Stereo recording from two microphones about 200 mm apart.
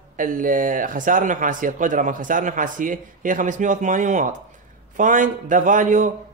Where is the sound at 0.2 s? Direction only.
40° right (ahead or behind).